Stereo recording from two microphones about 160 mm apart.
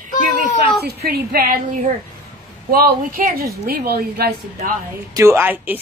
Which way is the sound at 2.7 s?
60° right (ahead or behind).